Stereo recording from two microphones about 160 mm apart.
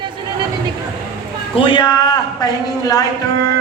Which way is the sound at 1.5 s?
30° left (ahead or behind).